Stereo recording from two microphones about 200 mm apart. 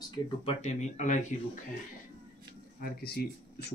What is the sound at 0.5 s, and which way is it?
Speech, 35° left (ahead or behind).